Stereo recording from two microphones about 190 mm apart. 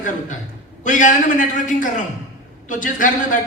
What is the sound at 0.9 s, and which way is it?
A man's voice, 40° left (ahead or behind).